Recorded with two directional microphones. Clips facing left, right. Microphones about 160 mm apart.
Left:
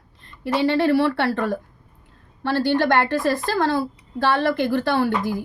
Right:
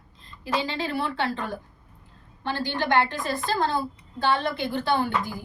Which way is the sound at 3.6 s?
80° left.